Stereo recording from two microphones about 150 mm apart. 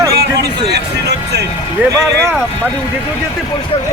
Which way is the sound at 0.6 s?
90° right.